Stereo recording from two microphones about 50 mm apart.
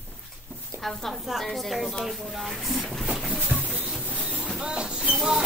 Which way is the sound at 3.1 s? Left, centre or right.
Centre.